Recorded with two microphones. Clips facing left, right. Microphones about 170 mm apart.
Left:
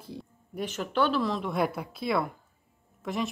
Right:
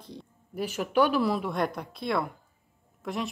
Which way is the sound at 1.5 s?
5° left (ahead or behind).